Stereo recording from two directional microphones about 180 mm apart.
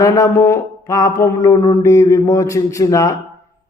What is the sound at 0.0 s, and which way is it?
Mantra, 20° left (ahead or behind).